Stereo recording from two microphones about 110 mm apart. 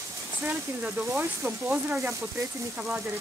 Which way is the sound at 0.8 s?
10° right (ahead or behind).